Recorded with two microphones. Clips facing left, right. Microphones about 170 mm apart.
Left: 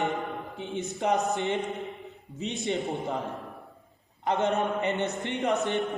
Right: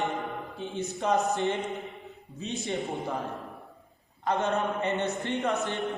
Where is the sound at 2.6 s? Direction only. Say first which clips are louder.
Left 3 dB; 20° left (ahead or behind).